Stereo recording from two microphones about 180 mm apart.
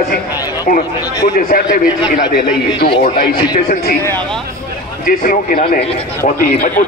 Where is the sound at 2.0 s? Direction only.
25° left (ahead or behind).